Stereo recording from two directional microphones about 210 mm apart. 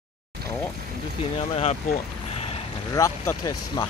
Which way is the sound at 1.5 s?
30° left (ahead or behind).